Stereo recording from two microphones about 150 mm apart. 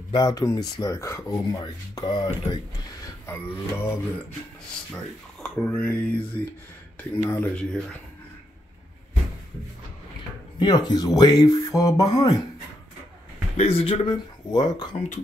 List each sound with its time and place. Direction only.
0.1 s speech: 25° left (ahead or behind)
3.3 s speech: 15° left (ahead or behind)
5.4 s speech: 5° left (ahead or behind)
10.6 s speech: 30° left (ahead or behind)
13.6 s speech: 40° left (ahead or behind)